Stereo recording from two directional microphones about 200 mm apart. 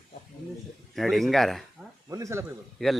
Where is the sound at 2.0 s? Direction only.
15° right (ahead or behind).